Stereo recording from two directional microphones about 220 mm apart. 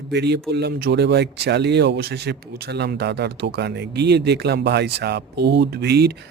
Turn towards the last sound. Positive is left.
turn(degrees=-50)  # may be behind; listen again after turning